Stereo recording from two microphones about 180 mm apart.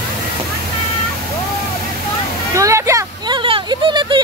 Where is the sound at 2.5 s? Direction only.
15° right (ahead or behind).